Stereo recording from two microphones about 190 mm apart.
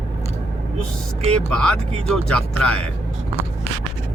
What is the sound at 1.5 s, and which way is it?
Speech, 5° left (ahead or behind).